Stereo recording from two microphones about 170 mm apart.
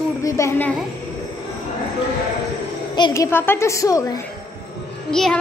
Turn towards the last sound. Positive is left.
turn(degrees=5)  # may be behind; listen again after turning